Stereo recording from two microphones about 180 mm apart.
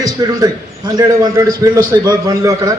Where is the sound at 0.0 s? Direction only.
20° right (ahead or behind).